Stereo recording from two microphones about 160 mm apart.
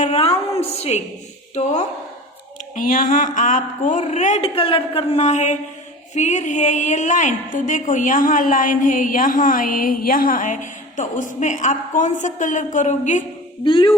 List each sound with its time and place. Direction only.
0.0 s a woman's voice: 40° left (ahead or behind)
2.7 s a woman's voice: 60° left (ahead or behind)
4.4 s a woman's voice: 35° left (ahead or behind); by 13.2 s 50° left (ahead or behind)
13.7 s speech: 30° left (ahead or behind)